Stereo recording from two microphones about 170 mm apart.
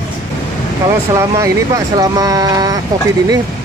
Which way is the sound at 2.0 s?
20° right (ahead or behind).